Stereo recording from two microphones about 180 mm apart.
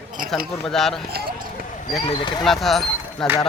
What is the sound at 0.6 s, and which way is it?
Speech, centre (ahead or behind).